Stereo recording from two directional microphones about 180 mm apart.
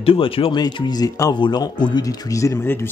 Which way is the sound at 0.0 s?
30° left (ahead or behind).